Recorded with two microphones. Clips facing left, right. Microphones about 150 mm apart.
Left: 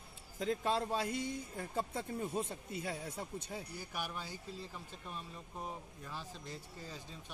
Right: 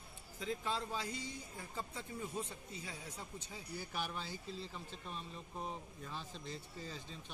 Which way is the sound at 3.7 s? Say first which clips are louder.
Right 4 dB; 10° left (ahead or behind).